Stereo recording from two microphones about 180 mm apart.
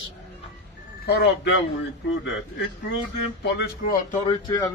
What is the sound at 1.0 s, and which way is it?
Speech, 65° left (ahead or behind).